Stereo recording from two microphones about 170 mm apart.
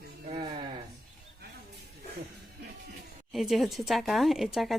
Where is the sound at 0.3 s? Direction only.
30° right (ahead or behind).